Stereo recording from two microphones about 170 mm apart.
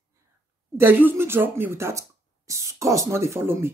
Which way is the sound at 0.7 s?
10° right (ahead or behind).